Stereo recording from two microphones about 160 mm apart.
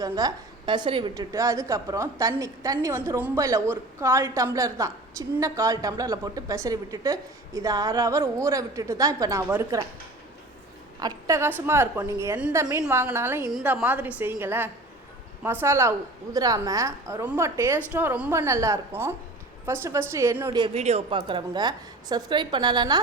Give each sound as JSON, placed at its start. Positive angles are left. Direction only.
{"t": 0.0, "sound": "a woman's voice", "side_deg": -25}
{"t": 1.1, "sound": "a woman's voice", "side_deg": -20}
{"t": 11.0, "sound": "a woman's voice", "side_deg": -20}
{"t": 13.5, "sound": "a woman's voice", "side_deg": -5}
{"t": 20.7, "sound": "a woman's voice", "side_deg": -40}